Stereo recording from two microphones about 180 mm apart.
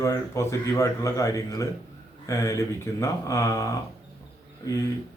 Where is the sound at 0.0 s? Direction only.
15° left (ahead or behind).